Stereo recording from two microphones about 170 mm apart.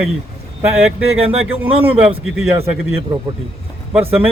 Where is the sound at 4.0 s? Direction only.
35° right (ahead or behind).